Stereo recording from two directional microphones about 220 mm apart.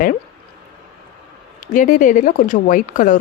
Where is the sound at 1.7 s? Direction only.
35° left (ahead or behind).